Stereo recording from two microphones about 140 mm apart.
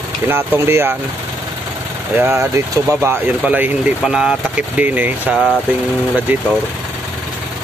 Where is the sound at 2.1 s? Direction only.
20° right (ahead or behind).